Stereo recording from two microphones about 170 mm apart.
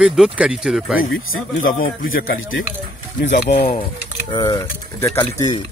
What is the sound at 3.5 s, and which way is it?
Speech, 80° left.